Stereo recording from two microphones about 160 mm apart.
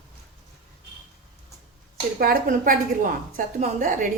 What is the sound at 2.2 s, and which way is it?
A woman's voice, 65° right (ahead or behind).